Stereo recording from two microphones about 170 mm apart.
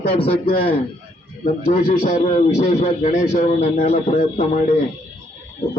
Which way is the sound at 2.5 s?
40° left (ahead or behind).